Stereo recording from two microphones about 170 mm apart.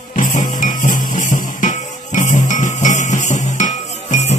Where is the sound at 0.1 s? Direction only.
50° left (ahead or behind).